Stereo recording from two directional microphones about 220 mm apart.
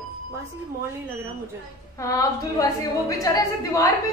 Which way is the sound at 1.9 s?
15° left (ahead or behind).